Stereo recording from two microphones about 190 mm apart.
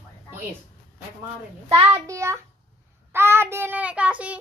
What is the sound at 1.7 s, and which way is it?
Speech, 30° right (ahead or behind).